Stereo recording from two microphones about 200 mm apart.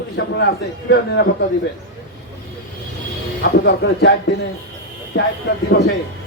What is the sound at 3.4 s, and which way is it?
Speech, 60° left (ahead or behind).